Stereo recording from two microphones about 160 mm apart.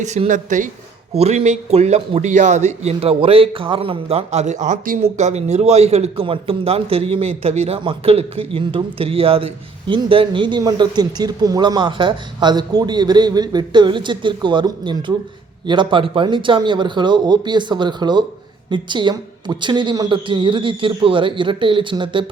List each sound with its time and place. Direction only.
0.0 s a woman's voice: 50° right (ahead or behind)
1.1 s a man's voice: 40° right (ahead or behind)